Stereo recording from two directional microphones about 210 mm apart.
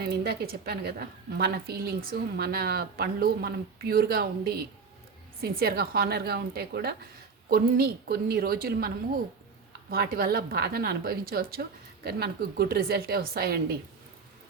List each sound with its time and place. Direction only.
0.0 s a woman's voice: 50° right (ahead or behind)
9.9 s a woman's voice: 45° right (ahead or behind)